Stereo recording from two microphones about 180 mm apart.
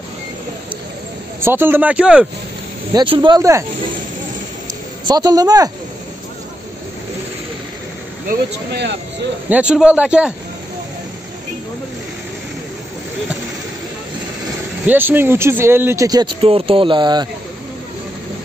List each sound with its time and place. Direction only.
1.4 s speech: 10° right (ahead or behind)
2.9 s speech: 25° right (ahead or behind)
5.0 s speech: 20° right (ahead or behind)
8.3 s speech: 70° right (ahead or behind)
9.5 s speech: 5° right (ahead or behind)
14.9 s speech: 10° right (ahead or behind)